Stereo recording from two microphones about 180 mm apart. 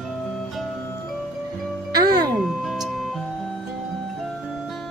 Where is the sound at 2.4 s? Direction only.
Centre (ahead or behind).